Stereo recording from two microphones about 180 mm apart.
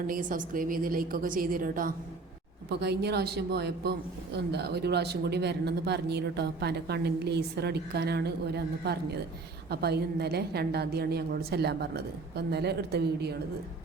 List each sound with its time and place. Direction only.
0.1 s a woman's voice: 50° right (ahead or behind)
2.6 s speech: 65° right (ahead or behind)